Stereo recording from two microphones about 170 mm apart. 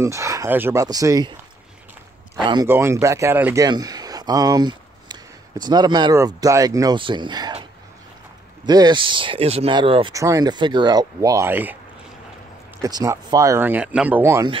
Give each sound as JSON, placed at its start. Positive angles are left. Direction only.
{"t": 0.0, "sound": "speech", "side_deg": -15}
{"t": 2.4, "sound": "speech", "side_deg": -25}
{"t": 2.7, "sound": "speech", "side_deg": -15}
{"t": 3.6, "sound": "a sound", "side_deg": -20}
{"t": 5.6, "sound": "speech", "side_deg": -25}
{"t": 8.6, "sound": "speech", "side_deg": -25}
{"t": 10.1, "sound": "speech", "side_deg": -20}
{"t": 12.8, "sound": "speech", "side_deg": -20}